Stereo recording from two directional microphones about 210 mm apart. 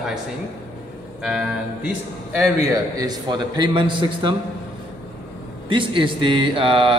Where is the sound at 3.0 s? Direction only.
20° right (ahead or behind).